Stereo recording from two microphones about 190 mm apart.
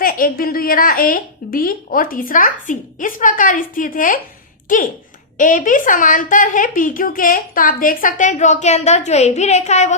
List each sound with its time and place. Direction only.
0.0 s a woman's voice: 50° left (ahead or behind)